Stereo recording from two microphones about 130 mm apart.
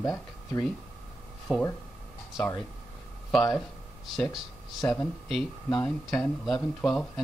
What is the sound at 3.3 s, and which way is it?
Speech, centre (ahead or behind).